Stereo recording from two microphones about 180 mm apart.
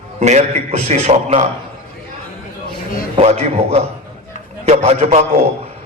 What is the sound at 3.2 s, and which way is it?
A man's voice, 35° right (ahead or behind).